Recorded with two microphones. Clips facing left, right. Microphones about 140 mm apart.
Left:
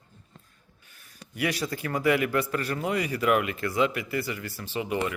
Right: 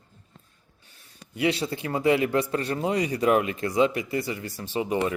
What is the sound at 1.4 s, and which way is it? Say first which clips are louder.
A man's voice: right 3 dB; 25° right (ahead or behind).